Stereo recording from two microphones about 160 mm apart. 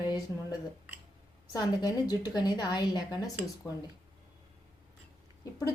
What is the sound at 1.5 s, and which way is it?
A woman's voice, 25° left (ahead or behind).